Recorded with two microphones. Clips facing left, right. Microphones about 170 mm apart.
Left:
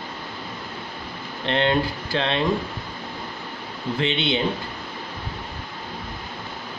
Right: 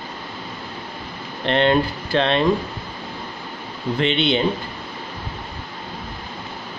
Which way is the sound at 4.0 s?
60° right (ahead or behind).